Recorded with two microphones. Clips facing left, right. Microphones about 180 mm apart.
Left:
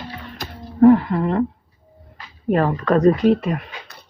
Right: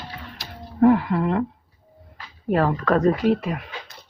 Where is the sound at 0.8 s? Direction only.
5° right (ahead or behind).